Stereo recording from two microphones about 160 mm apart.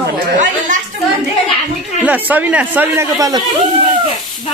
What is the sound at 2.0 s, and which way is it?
Speech, 10° right (ahead or behind).